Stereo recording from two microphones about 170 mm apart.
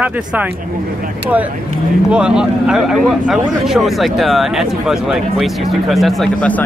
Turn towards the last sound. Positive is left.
turn(degrees=5)  # may be behind; listen again after turning